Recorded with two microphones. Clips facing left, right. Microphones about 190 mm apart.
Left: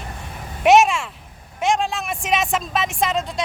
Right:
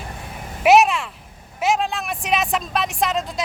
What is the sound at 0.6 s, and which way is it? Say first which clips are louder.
Speech: even; centre (ahead or behind).